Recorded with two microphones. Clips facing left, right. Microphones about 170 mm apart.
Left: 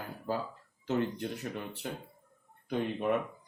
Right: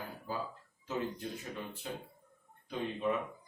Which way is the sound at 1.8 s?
60° left (ahead or behind).